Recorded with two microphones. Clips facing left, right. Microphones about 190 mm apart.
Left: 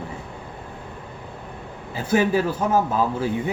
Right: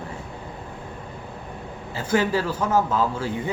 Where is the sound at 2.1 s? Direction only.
15° left (ahead or behind).